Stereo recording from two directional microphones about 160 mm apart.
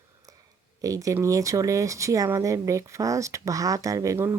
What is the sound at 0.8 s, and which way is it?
Speech, 20° right (ahead or behind).